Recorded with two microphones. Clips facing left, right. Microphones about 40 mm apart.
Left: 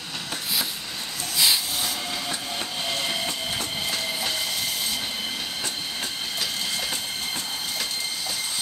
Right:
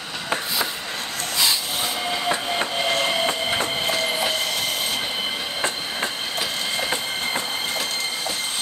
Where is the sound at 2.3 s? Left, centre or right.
Right.